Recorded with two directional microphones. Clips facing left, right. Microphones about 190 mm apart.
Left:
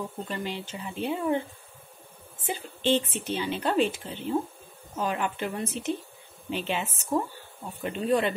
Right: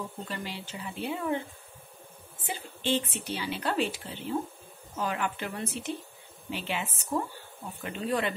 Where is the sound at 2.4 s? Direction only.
20° left (ahead or behind).